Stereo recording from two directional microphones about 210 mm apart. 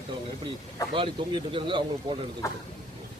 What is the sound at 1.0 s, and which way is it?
A man's voice, 25° right (ahead or behind).